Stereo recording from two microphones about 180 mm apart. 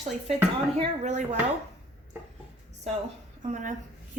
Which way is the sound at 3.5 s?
45° right (ahead or behind).